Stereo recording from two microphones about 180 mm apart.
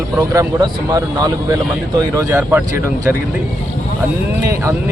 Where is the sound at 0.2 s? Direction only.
20° right (ahead or behind).